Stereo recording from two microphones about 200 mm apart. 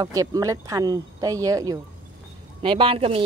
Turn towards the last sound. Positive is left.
turn(degrees=-30)  # may be behind; listen again after turning